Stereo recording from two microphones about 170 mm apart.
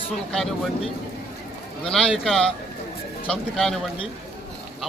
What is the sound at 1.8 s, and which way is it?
Speech, 5° left (ahead or behind).